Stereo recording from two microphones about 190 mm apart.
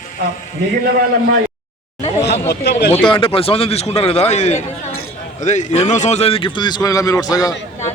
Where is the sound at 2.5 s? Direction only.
60° left (ahead or behind).